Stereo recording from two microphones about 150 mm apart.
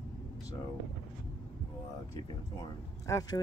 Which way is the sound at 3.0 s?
20° left (ahead or behind).